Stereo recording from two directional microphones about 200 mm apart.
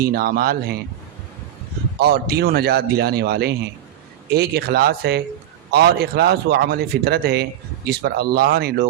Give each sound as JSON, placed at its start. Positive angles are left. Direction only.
{"t": 0.0, "sound": "a man's voice", "side_deg": -50}
{"t": 2.0, "sound": "a man's voice", "side_deg": -50}